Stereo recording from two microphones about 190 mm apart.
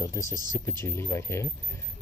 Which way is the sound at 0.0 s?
15° left (ahead or behind).